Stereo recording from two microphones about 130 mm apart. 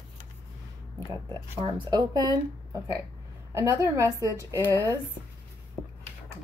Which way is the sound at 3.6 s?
20° right (ahead or behind).